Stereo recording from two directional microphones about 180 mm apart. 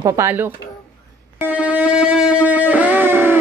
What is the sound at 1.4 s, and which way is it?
Music, 10° right (ahead or behind).